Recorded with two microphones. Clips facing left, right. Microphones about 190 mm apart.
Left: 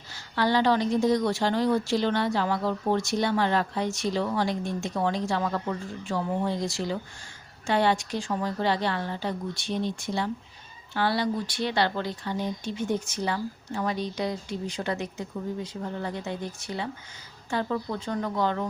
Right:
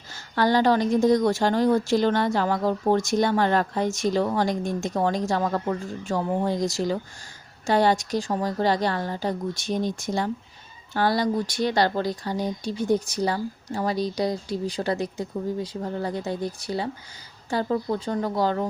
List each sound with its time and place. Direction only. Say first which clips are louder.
0.1 s a woman's voice: right 3 dB; 45° right (ahead or behind)